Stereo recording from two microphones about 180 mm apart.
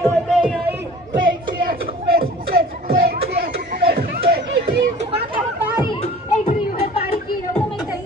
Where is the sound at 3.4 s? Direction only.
60° right (ahead or behind).